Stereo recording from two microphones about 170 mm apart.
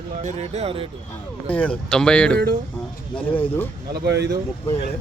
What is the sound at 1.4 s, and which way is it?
Speech, 5° left (ahead or behind).